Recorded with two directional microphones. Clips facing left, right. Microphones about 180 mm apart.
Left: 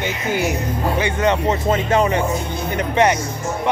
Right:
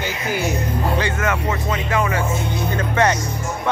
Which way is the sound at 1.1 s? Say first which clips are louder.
Left 4 dB; 35° left (ahead or behind).